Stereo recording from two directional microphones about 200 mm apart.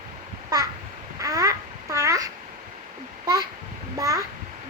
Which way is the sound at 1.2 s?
15° right (ahead or behind).